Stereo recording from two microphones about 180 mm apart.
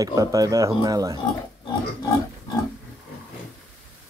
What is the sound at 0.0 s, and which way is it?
Speech, 20° right (ahead or behind).